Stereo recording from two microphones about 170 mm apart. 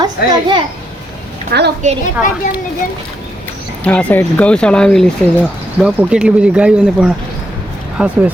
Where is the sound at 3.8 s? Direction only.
10° left (ahead or behind).